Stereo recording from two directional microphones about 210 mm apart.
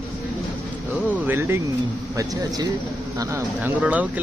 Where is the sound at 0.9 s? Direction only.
5° right (ahead or behind).